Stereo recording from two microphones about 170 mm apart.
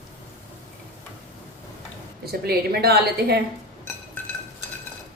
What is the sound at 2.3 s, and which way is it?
A woman's voice, 65° right (ahead or behind).